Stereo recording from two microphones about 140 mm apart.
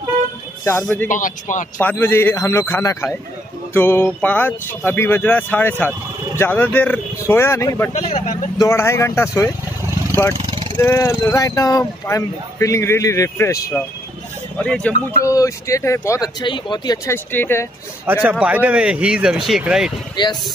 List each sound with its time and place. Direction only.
0.7 s speech: 15° left (ahead or behind)
1.0 s speech: 65° left (ahead or behind)
1.8 s speech: 15° left (ahead or behind)
7.9 s speech: 50° left (ahead or behind)
8.5 s speech: 20° left (ahead or behind)
10.3 s vehicle: 35° right (ahead or behind)
10.8 s speech: 20° left (ahead or behind)
14.6 s speech: 10° left (ahead or behind)
15.2 s speech: 25° left (ahead or behind)
16.3 s speech: 35° left (ahead or behind)
17.1 s speech: 15° left (ahead or behind)
18.0 s speech: 10° right (ahead or behind)
20.2 s speech: 30° left (ahead or behind)